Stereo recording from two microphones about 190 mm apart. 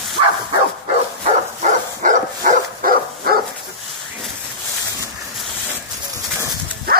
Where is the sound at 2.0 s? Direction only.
40° right (ahead or behind).